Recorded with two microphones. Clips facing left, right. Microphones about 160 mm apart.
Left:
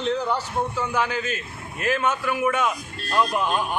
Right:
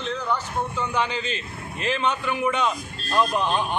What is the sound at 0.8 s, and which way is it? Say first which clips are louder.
A man's voice: right 1 dB; 10° left (ahead or behind).